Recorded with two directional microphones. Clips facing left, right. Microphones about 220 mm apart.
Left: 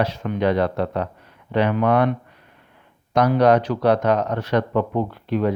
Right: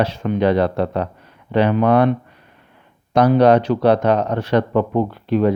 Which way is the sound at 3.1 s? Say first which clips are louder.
Right 3 dB; 30° right (ahead or behind).